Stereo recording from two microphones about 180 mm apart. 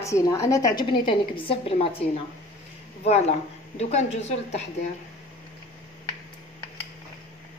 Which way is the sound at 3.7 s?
35° left (ahead or behind).